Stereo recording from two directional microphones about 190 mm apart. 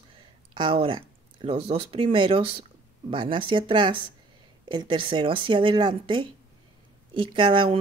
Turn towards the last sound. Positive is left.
turn(degrees=-25)  # may be behind; listen again after turning